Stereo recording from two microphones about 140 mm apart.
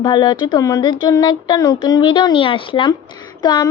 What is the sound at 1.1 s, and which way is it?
Speech, 25° left (ahead or behind).